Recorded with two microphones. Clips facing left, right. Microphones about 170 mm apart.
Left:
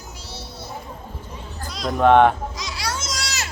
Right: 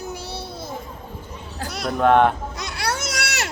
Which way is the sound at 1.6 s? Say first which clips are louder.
Right 2 dB; 70° right (ahead or behind).